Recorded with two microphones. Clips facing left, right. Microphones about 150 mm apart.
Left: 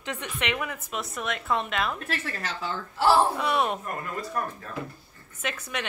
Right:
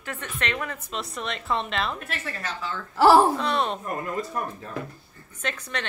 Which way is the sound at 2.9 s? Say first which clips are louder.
Right 5 dB; 90° right.